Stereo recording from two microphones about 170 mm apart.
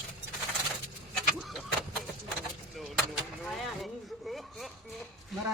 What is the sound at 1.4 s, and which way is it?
Vehicle, centre (ahead or behind).